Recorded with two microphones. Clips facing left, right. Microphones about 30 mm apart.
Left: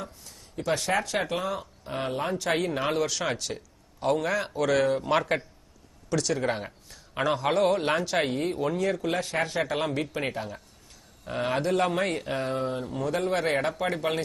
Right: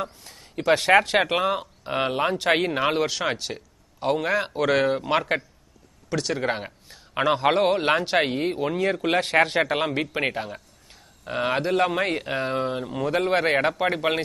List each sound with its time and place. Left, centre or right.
0.0 s a man's voice: right
9.0 s a man's voice: right
9.8 s a man's voice: right